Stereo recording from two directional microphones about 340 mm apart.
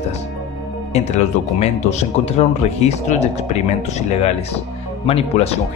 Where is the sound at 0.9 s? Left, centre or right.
Centre.